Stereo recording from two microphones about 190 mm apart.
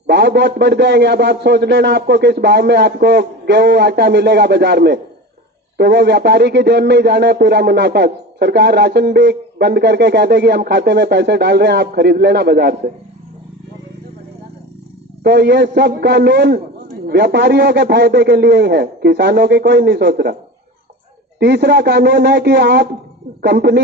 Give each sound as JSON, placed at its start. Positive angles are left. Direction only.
{"t": 0.1, "sound": "speech", "side_deg": -60}
{"t": 15.2, "sound": "speech", "side_deg": -60}
{"t": 21.3, "sound": "speech", "side_deg": -60}